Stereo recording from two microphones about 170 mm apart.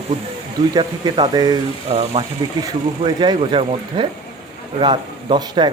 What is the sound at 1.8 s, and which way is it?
Speech, 35° right (ahead or behind).